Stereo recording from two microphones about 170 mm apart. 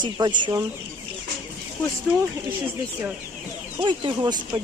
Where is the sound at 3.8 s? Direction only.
25° right (ahead or behind).